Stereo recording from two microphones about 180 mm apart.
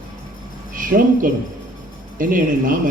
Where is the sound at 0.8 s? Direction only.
50° right (ahead or behind).